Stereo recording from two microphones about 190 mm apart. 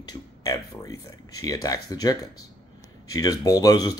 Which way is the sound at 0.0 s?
20° left (ahead or behind).